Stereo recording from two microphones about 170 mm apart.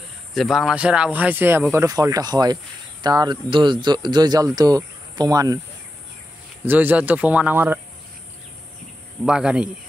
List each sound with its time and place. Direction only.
0.3 s speech: centre (ahead or behind); by 5.6 s 20° right (ahead or behind)
6.6 s speech: 10° right (ahead or behind)
9.2 s speech: 5° right (ahead or behind)